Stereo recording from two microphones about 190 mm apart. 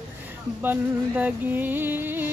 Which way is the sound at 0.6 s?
10° right (ahead or behind).